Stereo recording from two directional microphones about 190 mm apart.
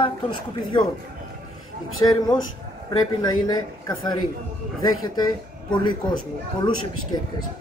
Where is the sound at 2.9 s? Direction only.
20° left (ahead or behind).